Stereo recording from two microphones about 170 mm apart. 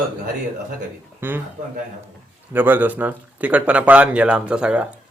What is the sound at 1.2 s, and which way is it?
Speech, 10° right (ahead or behind).